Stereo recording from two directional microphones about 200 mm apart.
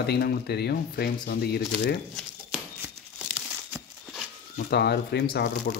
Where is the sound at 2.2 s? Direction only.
5° right (ahead or behind).